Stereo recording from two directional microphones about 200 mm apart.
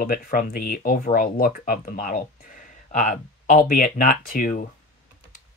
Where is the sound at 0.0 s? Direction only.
45° left (ahead or behind).